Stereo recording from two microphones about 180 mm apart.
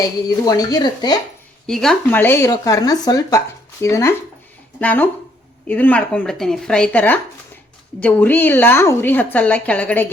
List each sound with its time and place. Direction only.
0.3 s speech: 20° left (ahead or behind)
1.6 s a woman's voice: centre (ahead or behind)